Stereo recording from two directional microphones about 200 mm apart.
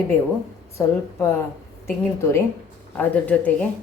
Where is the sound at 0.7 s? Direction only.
10° left (ahead or behind).